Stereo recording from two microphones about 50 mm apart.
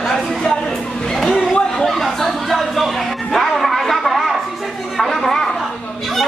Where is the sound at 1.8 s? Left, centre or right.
Centre.